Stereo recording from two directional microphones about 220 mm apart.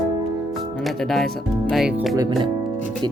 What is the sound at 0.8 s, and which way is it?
Speech, centre (ahead or behind).